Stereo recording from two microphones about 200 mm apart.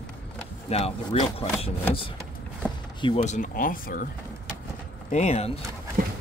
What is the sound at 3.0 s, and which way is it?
Speech, 35° left (ahead or behind).